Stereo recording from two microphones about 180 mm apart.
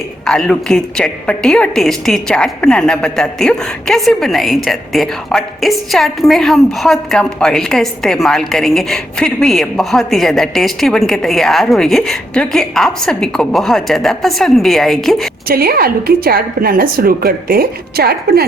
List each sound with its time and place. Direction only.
0.3 s a woman's voice: 5° left (ahead or behind)
15.4 s a woman's voice: 55° right (ahead or behind)